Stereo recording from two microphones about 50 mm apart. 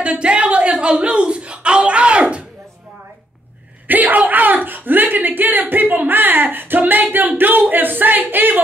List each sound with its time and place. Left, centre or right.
0.0 s speech: right
3.8 s a sound: right
4.6 s speech: right